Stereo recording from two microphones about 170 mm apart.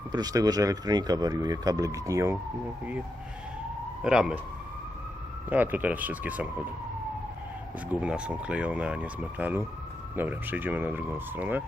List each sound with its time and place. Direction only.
0.1 s speech: 20° right (ahead or behind)
4.0 s speech: 5° right (ahead or behind)
5.5 s speech: 10° right (ahead or behind)
8.0 s speech: 5° right (ahead or behind)